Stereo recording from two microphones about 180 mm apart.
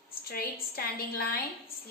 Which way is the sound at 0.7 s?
55° left (ahead or behind).